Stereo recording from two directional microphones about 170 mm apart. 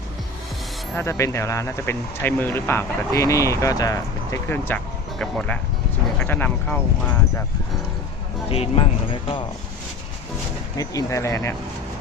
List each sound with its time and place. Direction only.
0.9 s speech: 15° left (ahead or behind)
8.4 s speech: 35° left (ahead or behind)
10.8 s speech: 20° left (ahead or behind)